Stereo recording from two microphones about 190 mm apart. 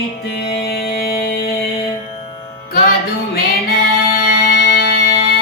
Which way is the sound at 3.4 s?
55° left (ahead or behind).